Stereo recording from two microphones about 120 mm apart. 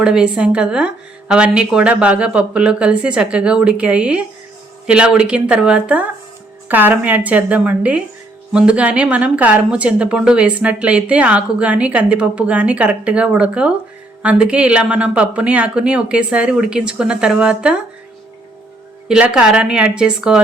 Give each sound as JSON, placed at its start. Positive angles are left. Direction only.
{"t": 0.0, "sound": "speech", "side_deg": -5}
{"t": 19.0, "sound": "speech", "side_deg": -5}